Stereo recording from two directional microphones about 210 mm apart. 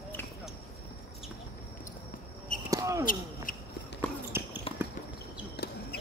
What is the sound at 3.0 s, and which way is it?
Basketball bounce, 40° left (ahead or behind).